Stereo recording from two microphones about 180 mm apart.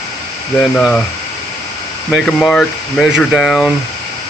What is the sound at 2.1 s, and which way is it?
Speech, 5° left (ahead or behind).